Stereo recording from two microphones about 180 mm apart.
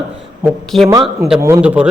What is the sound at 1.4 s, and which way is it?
Speech, 10° right (ahead or behind).